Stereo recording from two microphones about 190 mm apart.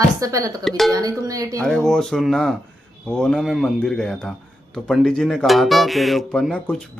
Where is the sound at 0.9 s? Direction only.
20° right (ahead or behind).